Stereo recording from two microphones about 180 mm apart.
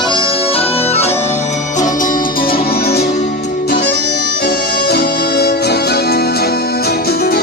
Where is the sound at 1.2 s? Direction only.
40° left (ahead or behind).